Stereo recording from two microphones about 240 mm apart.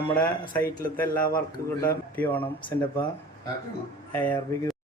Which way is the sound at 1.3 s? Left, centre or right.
Left.